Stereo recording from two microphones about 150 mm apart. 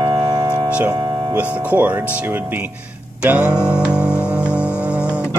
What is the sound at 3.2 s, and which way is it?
Music, 5° right (ahead or behind).